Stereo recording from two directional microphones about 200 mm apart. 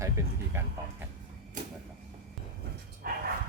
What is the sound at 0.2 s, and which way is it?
Speech, 15° right (ahead or behind).